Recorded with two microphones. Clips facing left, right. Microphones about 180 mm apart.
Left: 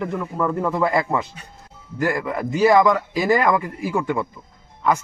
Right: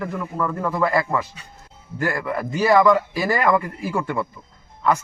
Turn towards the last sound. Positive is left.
turn(degrees=15)  # may be behind; listen again after turning